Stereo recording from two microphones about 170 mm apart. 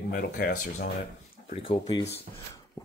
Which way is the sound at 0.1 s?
55° left (ahead or behind).